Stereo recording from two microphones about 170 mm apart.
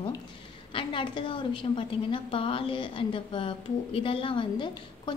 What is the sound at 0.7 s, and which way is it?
A woman's voice, 30° left (ahead or behind).